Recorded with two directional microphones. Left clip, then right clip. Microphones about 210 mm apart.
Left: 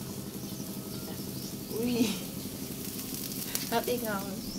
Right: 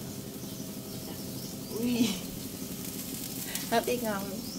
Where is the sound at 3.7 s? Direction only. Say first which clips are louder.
Right 2 dB; 25° right (ahead or behind).